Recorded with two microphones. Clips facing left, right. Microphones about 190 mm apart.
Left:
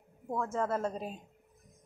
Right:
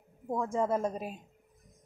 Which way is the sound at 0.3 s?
15° right (ahead or behind).